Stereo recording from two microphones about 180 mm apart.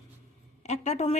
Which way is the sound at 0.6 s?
40° left (ahead or behind).